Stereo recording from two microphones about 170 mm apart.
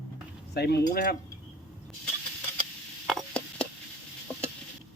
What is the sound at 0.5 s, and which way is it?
Speech, 70° left (ahead or behind).